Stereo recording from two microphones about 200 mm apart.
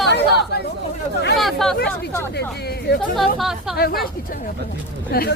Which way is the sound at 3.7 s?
50° left (ahead or behind).